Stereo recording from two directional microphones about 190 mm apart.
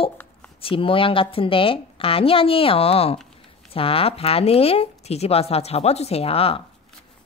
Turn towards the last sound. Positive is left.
turn(degrees=30)  # may be behind; listen again after turning